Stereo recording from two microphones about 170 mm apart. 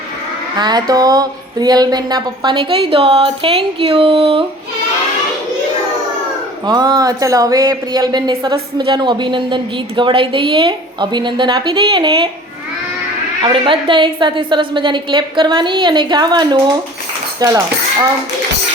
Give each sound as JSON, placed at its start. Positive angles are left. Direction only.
{"t": 0.6, "sound": "speech", "side_deg": -25}
{"t": 6.7, "sound": "speech", "side_deg": -25}
{"t": 13.4, "sound": "speech", "side_deg": -30}